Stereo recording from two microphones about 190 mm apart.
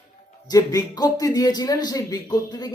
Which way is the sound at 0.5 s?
20° left (ahead or behind).